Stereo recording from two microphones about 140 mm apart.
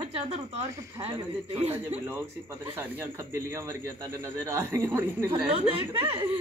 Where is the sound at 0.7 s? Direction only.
20° right (ahead or behind).